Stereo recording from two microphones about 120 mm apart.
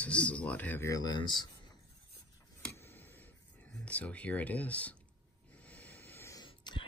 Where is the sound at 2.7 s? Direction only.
20° left (ahead or behind).